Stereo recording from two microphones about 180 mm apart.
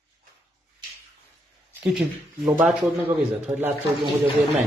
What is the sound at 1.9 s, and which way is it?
A man's voice, 5° right (ahead or behind).